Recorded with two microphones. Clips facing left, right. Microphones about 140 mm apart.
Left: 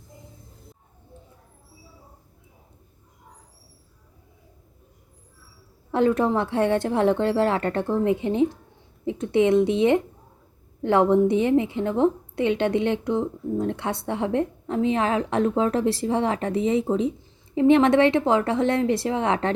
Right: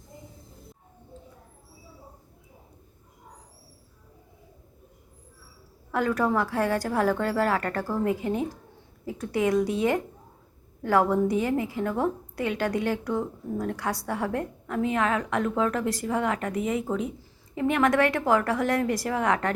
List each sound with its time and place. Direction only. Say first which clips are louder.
5.9 s a woman's voice: left 4 dB; 25° left (ahead or behind)